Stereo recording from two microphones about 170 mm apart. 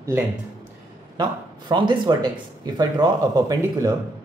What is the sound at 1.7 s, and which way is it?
Speech, 30° right (ahead or behind).